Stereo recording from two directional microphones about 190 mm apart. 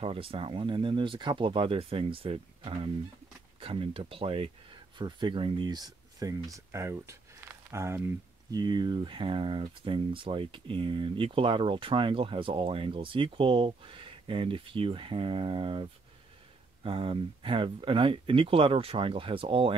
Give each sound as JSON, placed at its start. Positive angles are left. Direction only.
{"t": 0.0, "sound": "speech", "side_deg": -30}